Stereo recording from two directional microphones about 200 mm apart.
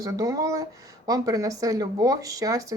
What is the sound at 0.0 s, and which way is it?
Speech, 15° right (ahead or behind).